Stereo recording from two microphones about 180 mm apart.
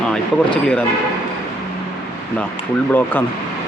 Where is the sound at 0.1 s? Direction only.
5° left (ahead or behind).